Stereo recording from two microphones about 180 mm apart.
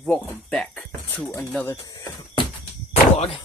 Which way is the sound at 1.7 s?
20° left (ahead or behind).